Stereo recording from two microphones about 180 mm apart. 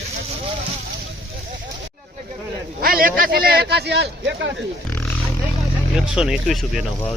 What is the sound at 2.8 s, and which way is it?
A man's voice, 55° right (ahead or behind).